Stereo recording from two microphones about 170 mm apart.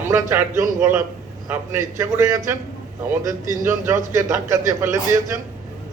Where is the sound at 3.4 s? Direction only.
50° right (ahead or behind).